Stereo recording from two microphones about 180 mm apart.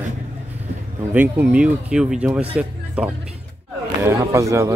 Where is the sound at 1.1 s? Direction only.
10° right (ahead or behind).